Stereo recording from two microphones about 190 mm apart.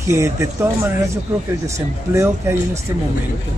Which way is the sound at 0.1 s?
15° right (ahead or behind).